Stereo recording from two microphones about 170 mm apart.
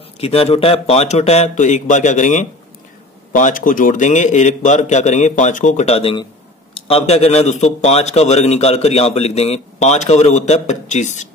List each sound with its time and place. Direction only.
0.2 s a man's voice: 35° left (ahead or behind)